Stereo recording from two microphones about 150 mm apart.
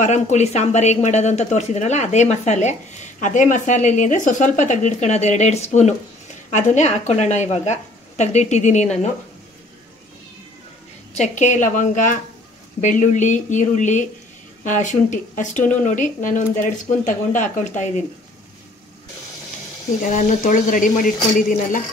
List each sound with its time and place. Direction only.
0.0 s speech: 50° left (ahead or behind)
11.1 s speech: 55° left (ahead or behind)
20.2 s speech: 60° left (ahead or behind)